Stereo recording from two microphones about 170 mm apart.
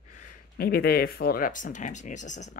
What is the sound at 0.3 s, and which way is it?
Speech, 65° left (ahead or behind).